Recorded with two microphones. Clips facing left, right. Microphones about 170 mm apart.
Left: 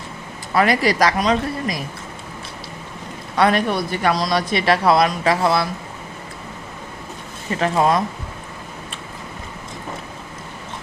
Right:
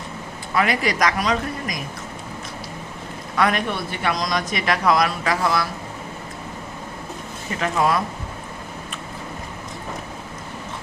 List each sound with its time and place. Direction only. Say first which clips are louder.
0.5 s speech: left 4 dB; 35° left (ahead or behind)
3.3 s speech: left 4 dB; 35° left (ahead or behind)
7.6 s speech: left 3 dB; 30° left (ahead or behind)